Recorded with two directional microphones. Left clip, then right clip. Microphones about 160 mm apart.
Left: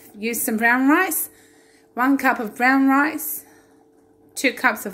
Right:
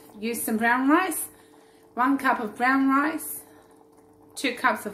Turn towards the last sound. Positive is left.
turn(degrees=45)  # may be behind; listen again after turning